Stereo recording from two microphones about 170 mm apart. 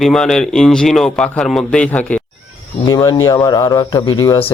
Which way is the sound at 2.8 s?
20° left (ahead or behind).